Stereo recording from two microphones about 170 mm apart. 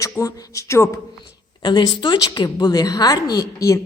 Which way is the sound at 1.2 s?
25° left (ahead or behind).